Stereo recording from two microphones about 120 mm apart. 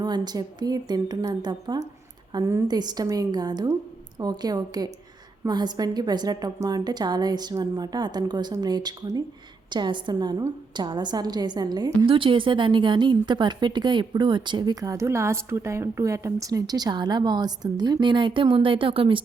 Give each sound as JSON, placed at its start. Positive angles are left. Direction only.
{"t": 0.0, "sound": "a woman's voice", "side_deg": -35}